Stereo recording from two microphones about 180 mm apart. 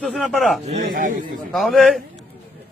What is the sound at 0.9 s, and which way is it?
Speech, 50° right (ahead or behind).